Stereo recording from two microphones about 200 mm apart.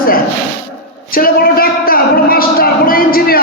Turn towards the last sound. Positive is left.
turn(degrees=45)  # may be behind; listen again after turning